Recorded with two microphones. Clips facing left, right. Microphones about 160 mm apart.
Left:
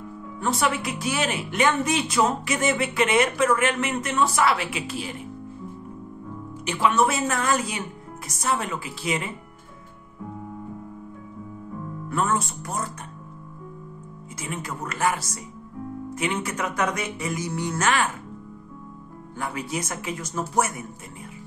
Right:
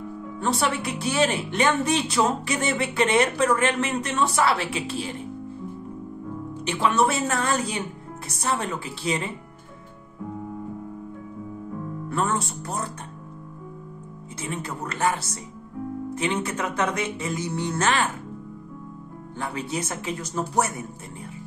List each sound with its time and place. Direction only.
0.4 s speech: 30° right (ahead or behind)
6.5 s speech: 30° right (ahead or behind)
12.1 s speech: 30° right (ahead or behind)
14.5 s speech: 30° right (ahead or behind)
19.3 s speech: 30° right (ahead or behind)